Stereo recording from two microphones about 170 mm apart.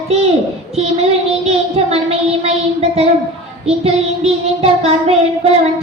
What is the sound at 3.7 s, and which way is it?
A child's voice, 35° right (ahead or behind).